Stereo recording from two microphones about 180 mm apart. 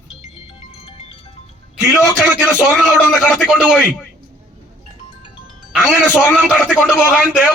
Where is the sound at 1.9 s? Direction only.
Centre (ahead or behind).